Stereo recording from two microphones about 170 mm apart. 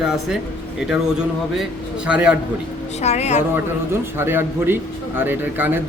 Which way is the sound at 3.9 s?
15° right (ahead or behind).